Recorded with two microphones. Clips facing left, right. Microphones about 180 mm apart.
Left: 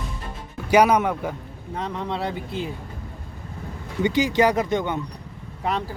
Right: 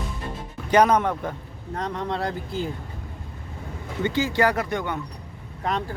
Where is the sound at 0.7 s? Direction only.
10° left (ahead or behind).